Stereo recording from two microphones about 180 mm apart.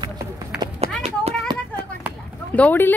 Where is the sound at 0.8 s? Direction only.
35° right (ahead or behind).